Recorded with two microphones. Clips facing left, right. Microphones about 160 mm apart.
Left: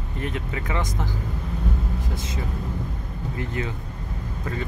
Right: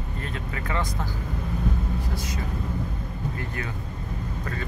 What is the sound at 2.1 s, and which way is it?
Speech, 25° left (ahead or behind).